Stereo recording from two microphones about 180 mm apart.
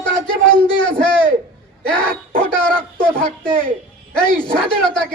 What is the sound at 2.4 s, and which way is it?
Speech, 5° left (ahead or behind).